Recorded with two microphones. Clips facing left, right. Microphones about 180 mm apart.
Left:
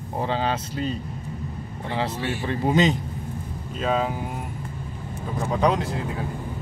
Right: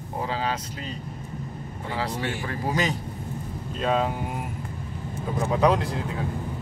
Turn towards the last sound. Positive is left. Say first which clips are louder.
# right 1 dB
turn(degrees=0)  # may be behind; listen again after turning